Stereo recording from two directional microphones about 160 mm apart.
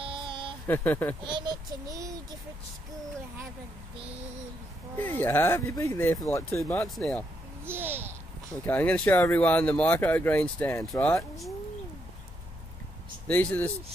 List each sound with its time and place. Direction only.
0.0 s a sound: 30° right (ahead or behind)
0.7 s speech: 15° left (ahead or behind)
1.2 s child singing: 30° right (ahead or behind)
4.9 s speech: 10° left (ahead or behind)
6.7 s speech: 5° left (ahead or behind)
7.6 s a child's voice: 15° right (ahead or behind)
8.6 s speech: 10° left (ahead or behind)
13.3 s speech: 10° left (ahead or behind)